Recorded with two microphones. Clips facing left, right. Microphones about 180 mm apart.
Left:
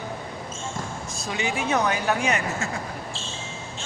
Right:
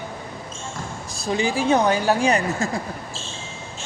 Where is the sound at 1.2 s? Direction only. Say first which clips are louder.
Right 6 dB; 35° right (ahead or behind).